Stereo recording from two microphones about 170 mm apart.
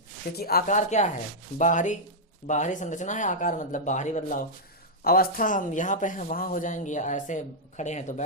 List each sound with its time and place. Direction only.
0.3 s speech: 65° left (ahead or behind)
0.7 s speech: 45° left (ahead or behind)
5.0 s speech: 60° left (ahead or behind); by 8.2 s 45° left (ahead or behind)